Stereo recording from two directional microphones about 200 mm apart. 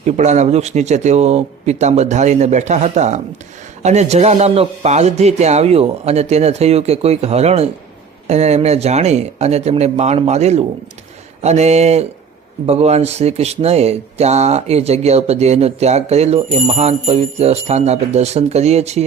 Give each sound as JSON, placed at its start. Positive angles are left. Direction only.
{"t": 0.0, "sound": "speech", "side_deg": -35}